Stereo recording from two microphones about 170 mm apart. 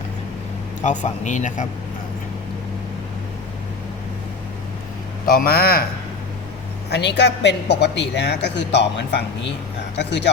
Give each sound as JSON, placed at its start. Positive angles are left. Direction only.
{"t": 0.8, "sound": "speech", "side_deg": 45}
{"t": 5.2, "sound": "a man's voice", "side_deg": 60}
{"t": 6.9, "sound": "a woman's voice", "side_deg": 85}